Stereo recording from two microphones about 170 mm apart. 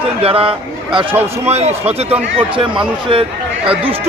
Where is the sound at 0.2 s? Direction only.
35° right (ahead or behind).